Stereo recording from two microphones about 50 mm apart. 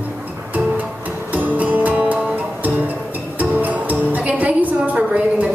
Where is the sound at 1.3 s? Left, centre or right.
Right.